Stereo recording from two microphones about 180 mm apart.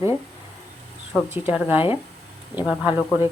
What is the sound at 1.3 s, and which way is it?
Speech, 10° right (ahead or behind).